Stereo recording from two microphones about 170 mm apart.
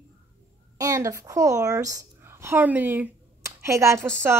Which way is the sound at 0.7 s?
20° right (ahead or behind).